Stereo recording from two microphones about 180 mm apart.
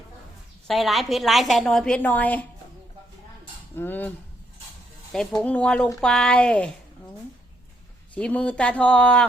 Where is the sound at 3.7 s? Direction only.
10° left (ahead or behind).